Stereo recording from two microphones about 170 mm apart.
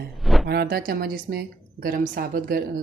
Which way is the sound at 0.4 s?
70° right (ahead or behind).